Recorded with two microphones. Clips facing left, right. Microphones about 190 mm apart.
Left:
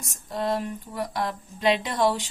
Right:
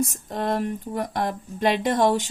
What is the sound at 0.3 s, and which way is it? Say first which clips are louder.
Speech: left 1 dB; 50° right (ahead or behind).